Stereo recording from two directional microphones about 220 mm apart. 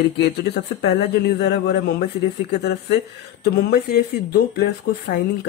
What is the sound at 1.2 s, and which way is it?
Speech, 50° left (ahead or behind).